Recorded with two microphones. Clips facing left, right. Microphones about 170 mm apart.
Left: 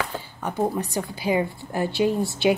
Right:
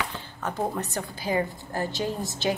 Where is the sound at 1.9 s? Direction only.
40° right (ahead or behind).